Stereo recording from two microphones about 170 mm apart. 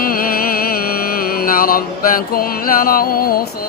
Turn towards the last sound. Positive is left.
turn(degrees=60)  # may be behind; listen again after turning